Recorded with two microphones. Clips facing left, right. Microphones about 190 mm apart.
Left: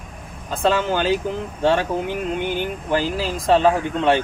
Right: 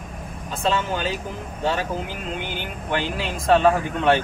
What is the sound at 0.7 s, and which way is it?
Speech, 85° left.